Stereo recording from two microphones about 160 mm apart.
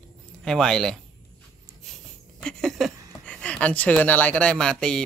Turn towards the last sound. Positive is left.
turn(degrees=5)  # may be behind; listen again after turning